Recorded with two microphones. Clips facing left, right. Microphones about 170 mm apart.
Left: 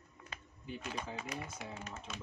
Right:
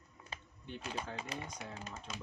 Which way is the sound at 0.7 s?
5° left (ahead or behind).